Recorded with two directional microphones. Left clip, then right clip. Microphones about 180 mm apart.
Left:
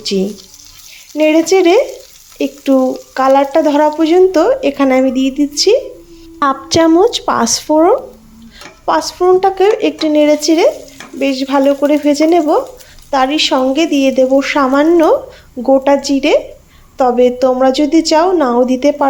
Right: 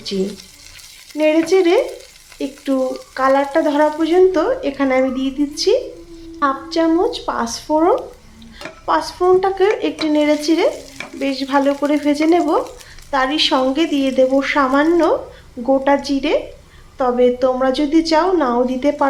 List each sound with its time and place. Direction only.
1.1 s speech: 30° left (ahead or behind)
6.4 s a woman's voice: 45° left (ahead or behind)
7.7 s speech: 25° left (ahead or behind)